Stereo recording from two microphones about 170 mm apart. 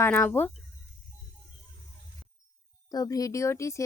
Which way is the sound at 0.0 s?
10° left (ahead or behind).